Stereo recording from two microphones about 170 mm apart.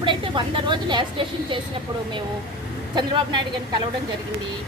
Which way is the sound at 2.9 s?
25° right (ahead or behind).